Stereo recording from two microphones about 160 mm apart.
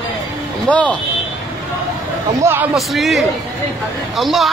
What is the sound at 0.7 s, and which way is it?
Speech, 10° left (ahead or behind).